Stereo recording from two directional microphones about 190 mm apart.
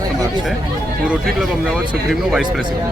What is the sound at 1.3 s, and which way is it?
Speech, centre (ahead or behind).